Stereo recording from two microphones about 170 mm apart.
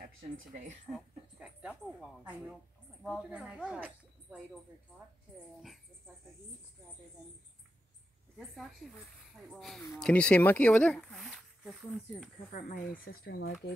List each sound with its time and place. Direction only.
0.0 s speech: 50° right (ahead or behind)
1.4 s speech: 5° right (ahead or behind)
8.4 s speech: centre (ahead or behind)
12.5 s speech: 50° left (ahead or behind); by 13.7 s 70° left (ahead or behind)